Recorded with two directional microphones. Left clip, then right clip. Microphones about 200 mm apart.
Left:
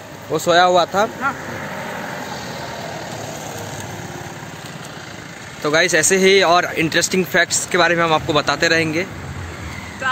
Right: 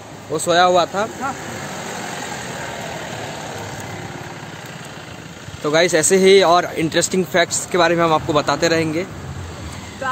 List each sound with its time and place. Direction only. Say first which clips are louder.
0.3 s speech: left 1 dB; 25° left (ahead or behind)
1.6 s vehicle: left 1 dB; 30° right (ahead or behind)
5.6 s speech: even; 5° right (ahead or behind)